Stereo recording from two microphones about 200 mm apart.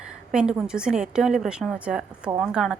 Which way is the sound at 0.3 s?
5° right (ahead or behind).